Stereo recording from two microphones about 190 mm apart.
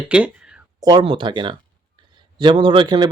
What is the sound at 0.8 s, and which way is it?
Speech, 25° right (ahead or behind).